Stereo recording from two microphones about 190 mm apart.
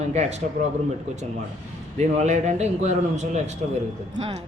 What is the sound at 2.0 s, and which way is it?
Speech, 35° right (ahead or behind).